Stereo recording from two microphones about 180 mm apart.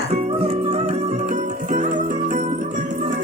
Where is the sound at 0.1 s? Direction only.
35° right (ahead or behind).